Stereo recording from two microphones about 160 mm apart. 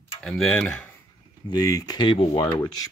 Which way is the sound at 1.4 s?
25° left (ahead or behind).